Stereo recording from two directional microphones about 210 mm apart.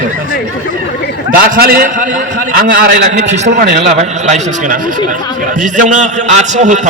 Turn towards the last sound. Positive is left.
turn(degrees=-35)  # may be behind; listen again after turning